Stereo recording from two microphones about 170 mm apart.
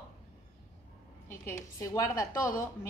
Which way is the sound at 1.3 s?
15° left (ahead or behind).